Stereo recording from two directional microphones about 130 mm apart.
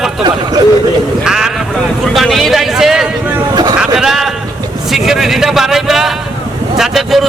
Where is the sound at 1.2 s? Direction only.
5° right (ahead or behind).